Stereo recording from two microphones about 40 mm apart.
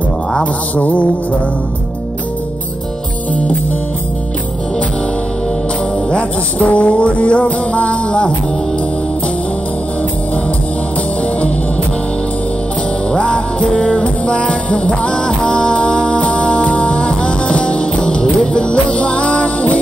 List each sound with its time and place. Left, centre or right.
6.6 s music: left
13.1 s music: left